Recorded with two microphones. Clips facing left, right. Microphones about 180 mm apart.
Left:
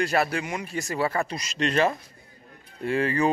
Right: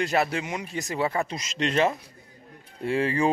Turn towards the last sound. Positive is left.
turn(degrees=-25)  # may be behind; listen again after turning